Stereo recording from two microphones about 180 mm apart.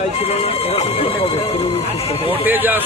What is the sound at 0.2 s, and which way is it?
Speech, 35° left (ahead or behind).